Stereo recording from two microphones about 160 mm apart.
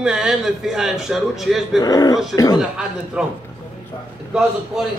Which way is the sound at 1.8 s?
20° left (ahead or behind).